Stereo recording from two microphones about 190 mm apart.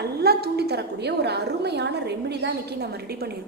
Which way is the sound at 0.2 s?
55° right (ahead or behind).